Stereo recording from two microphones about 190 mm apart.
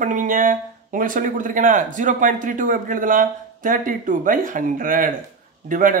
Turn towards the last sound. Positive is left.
turn(degrees=-45)  # may be behind; listen again after turning